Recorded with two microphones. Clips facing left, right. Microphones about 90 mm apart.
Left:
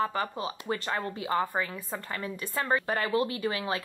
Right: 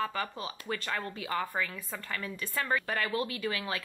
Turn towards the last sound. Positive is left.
turn(degrees=25)  # may be behind; listen again after turning